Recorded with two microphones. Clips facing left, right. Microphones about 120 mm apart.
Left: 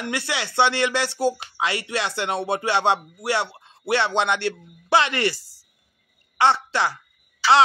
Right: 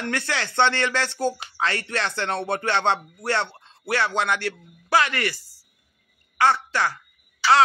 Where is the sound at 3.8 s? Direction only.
25° left (ahead or behind).